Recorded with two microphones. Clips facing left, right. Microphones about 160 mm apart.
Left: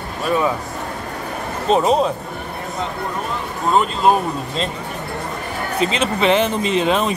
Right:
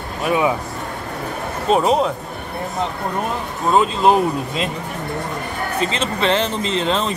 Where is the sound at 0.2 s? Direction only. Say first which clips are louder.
Right 1 dB; 15° right (ahead or behind).